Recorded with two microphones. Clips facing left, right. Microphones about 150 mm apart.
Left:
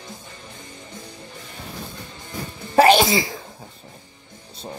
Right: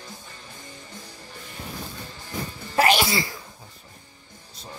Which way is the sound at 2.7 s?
30° left (ahead or behind).